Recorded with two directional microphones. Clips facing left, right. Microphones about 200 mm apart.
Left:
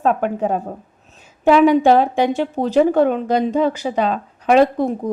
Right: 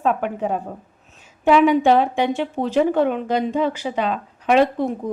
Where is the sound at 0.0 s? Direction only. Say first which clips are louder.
Left 3 dB; 40° left (ahead or behind).